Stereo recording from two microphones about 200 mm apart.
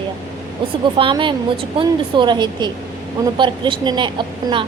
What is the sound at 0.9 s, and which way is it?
A woman's voice, 25° right (ahead or behind).